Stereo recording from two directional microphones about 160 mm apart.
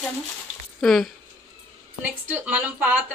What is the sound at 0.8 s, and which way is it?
Speech, 5° left (ahead or behind).